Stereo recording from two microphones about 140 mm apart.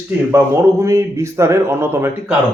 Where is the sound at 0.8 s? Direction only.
20° right (ahead or behind).